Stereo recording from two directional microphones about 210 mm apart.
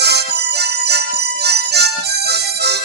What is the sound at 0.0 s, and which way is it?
Harmonica, 50° right (ahead or behind).